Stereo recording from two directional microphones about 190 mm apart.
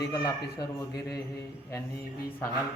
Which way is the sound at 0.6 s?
20° left (ahead or behind).